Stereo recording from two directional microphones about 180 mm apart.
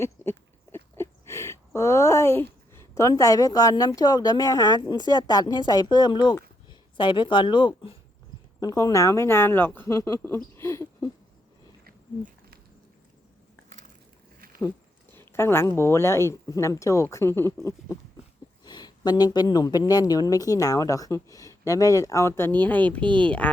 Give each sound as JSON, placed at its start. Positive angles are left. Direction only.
{"t": 0.0, "sound": "speech", "side_deg": 15}
{"t": 15.1, "sound": "speech", "side_deg": 15}